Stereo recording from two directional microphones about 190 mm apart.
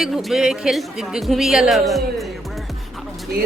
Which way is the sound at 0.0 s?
Centre (ahead or behind).